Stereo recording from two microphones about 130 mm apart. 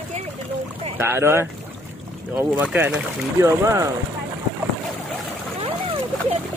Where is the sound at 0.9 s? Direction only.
20° right (ahead or behind).